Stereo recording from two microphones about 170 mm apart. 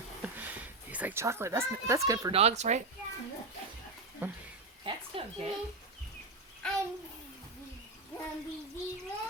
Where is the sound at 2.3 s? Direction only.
40° right (ahead or behind).